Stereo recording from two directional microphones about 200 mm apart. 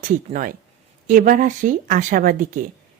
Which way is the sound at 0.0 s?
40° right (ahead or behind).